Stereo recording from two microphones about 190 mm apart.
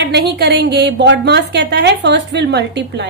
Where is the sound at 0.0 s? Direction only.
60° right (ahead or behind).